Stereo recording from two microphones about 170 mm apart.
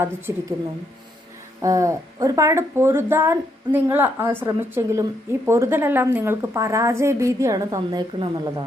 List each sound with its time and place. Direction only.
0.0 s speech: 15° right (ahead or behind)
1.6 s speech: 20° right (ahead or behind)